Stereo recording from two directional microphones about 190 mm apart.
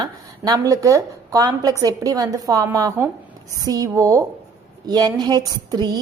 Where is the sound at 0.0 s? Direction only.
20° right (ahead or behind).